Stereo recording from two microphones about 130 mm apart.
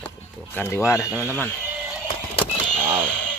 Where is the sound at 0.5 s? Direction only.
20° left (ahead or behind).